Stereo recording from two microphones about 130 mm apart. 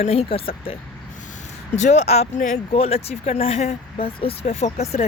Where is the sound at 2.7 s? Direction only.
50° left (ahead or behind).